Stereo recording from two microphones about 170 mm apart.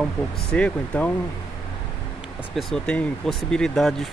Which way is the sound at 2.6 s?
5° left (ahead or behind).